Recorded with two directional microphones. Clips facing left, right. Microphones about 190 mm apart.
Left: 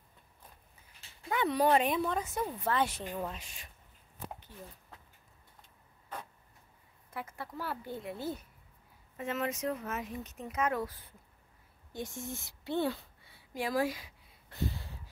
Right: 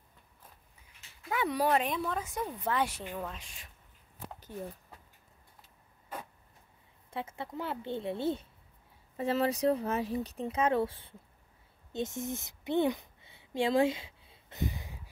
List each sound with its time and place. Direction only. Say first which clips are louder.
1.3 s speech: left 1 dB; 5° right (ahead or behind)
3.2 s speech: left 1 dB; 5° left (ahead or behind)
5.6 s vehicle: even; 10° right (ahead or behind)
7.1 s a woman's voice: right 3 dB; 25° right (ahead or behind)
11.9 s a sound: right 5 dB; 20° right (ahead or behind)